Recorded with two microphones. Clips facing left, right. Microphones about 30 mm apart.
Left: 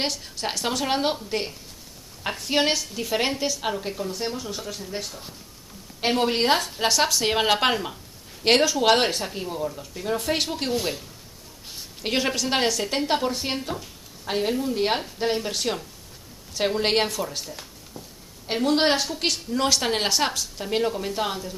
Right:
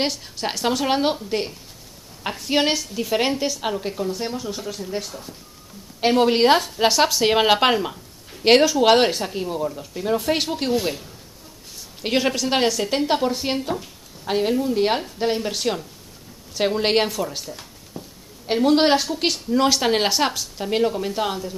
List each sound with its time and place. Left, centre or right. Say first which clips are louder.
0.0 s a woman's voice: right 3 dB; centre
17.9 s a sound: right 5 dB; centre
18.5 s speech: right 4 dB; centre